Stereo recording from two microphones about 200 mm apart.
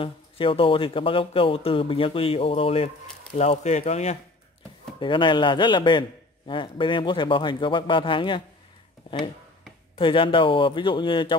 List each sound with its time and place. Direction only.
0.0 s a man's voice: 25° left (ahead or behind)